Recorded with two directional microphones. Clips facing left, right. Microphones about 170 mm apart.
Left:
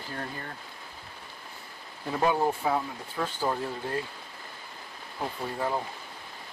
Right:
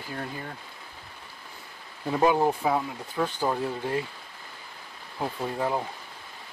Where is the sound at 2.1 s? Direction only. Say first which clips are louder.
Right 3 dB; 15° right (ahead or behind).